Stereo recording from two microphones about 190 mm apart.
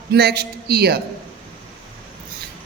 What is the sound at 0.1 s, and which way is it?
Speech, 55° right (ahead or behind).